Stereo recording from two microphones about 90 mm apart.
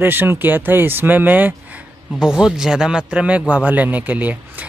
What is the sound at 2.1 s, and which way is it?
Speech, 5° right (ahead or behind).